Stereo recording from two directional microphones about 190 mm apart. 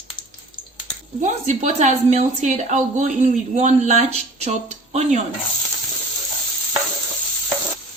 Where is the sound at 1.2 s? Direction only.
40° right (ahead or behind).